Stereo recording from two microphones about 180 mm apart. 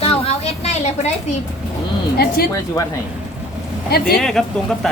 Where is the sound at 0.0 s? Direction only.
35° left (ahead or behind).